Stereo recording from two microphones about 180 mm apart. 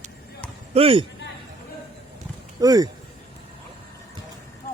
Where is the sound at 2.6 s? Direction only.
20° right (ahead or behind).